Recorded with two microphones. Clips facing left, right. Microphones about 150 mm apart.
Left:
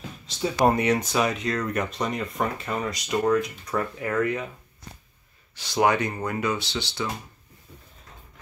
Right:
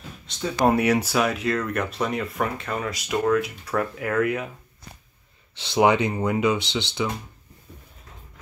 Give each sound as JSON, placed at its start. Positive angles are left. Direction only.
{"t": 0.3, "sound": "speech", "side_deg": 0}
{"t": 5.6, "sound": "speech", "side_deg": -20}